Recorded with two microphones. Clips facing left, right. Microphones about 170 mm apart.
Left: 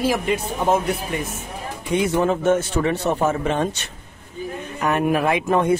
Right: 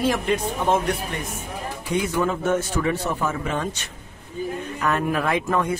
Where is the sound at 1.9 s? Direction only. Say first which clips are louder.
Left 4 dB; 25° left (ahead or behind).